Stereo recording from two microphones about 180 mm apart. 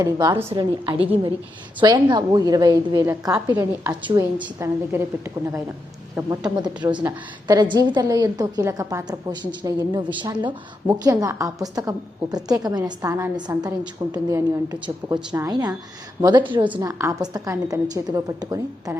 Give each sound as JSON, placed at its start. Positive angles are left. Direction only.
{"t": 0.0, "sound": "a woman's voice", "side_deg": -20}